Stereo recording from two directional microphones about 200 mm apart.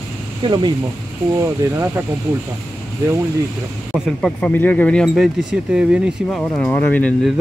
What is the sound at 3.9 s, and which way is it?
Speech, centre (ahead or behind).